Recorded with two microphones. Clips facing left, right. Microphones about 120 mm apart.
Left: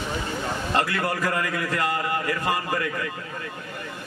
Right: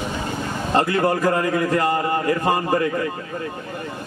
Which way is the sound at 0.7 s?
25° right (ahead or behind).